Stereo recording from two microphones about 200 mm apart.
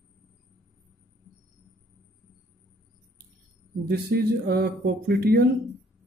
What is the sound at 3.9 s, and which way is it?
Speech, 55° right (ahead or behind).